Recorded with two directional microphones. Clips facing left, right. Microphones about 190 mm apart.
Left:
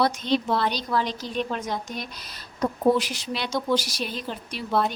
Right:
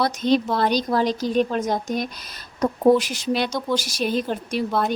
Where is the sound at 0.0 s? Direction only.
45° right (ahead or behind).